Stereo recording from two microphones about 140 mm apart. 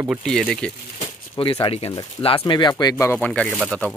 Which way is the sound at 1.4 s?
30° left (ahead or behind).